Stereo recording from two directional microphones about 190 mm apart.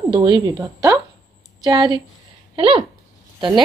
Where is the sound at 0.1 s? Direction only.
20° right (ahead or behind).